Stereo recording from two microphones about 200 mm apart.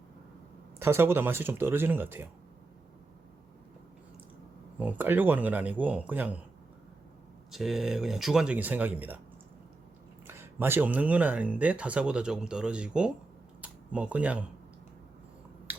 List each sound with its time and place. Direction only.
0.8 s speech: 15° right (ahead or behind)
4.8 s speech: 10° right (ahead or behind)
7.5 s speech: centre (ahead or behind)
10.2 s speech: 10° right (ahead or behind)
13.6 s camera: 5° right (ahead or behind)
15.7 s a sound: 10° right (ahead or behind)